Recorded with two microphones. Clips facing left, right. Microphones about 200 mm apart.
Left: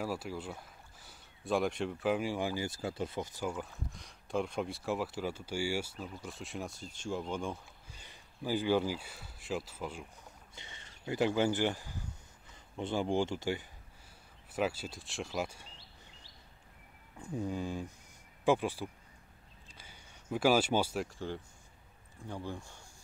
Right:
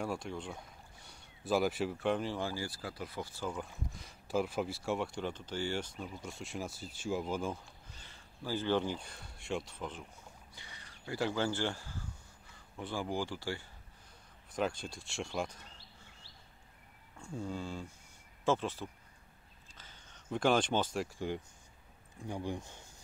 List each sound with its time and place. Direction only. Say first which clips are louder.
0.0 s speech: left 1 dB; 5° left (ahead or behind); by 3.4 s 20° left (ahead or behind)
3.4 s speech: left 2 dB; centre (ahead or behind)
7.9 s speech: even; 15° left (ahead or behind)
10.5 s speech: left 2 dB; 25° left (ahead or behind)
14.5 s speech: left 1 dB; 5° left (ahead or behind)
17.2 s speech: left 4 dB; 15° left (ahead or behind)
19.8 s a sound: left 1 dB; 10° left (ahead or behind)
22.3 s speech: right 2 dB; 15° right (ahead or behind)